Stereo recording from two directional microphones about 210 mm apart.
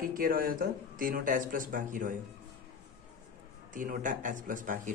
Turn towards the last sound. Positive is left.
turn(degrees=-40)  # may be behind; listen again after turning